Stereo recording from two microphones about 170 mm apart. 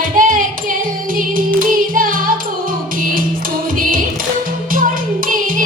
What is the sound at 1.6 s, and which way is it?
Music, 55° right (ahead or behind).